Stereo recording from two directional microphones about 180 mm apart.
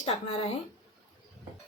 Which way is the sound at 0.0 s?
35° left (ahead or behind).